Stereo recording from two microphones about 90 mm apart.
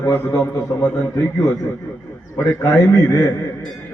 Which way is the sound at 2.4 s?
35° left (ahead or behind).